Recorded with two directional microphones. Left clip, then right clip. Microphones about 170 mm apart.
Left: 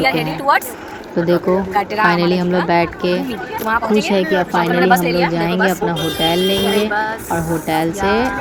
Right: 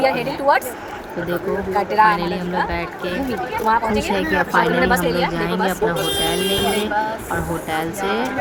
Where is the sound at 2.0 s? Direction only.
40° left (ahead or behind).